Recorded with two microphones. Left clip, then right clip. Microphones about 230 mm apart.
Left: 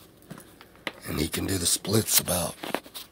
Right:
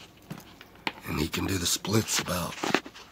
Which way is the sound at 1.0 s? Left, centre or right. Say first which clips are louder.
Left 2 dB; centre.